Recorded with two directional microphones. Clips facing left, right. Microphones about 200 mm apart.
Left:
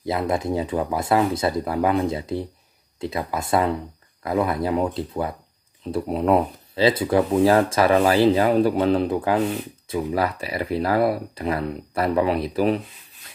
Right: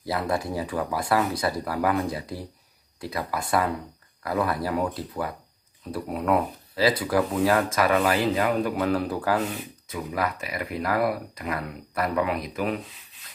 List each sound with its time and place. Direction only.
0.0 s speech: 20° left (ahead or behind)
9.8 s speech: 30° left (ahead or behind)